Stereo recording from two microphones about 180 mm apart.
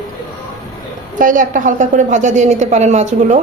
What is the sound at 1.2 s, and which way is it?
A woman's voice, 45° right (ahead or behind).